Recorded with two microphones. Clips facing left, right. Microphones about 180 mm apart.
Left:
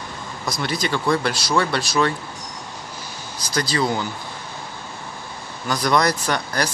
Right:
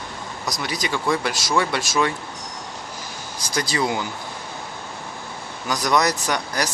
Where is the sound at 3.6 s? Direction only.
15° right (ahead or behind).